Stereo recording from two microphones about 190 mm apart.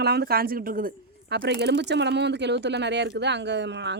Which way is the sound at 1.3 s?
65° right (ahead or behind).